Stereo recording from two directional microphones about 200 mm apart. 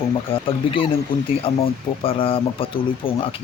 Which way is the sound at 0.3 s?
25° left (ahead or behind).